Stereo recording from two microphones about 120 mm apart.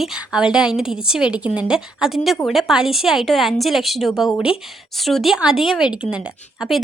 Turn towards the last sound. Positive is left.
turn(degrees=0)  # may be behind; listen again after turning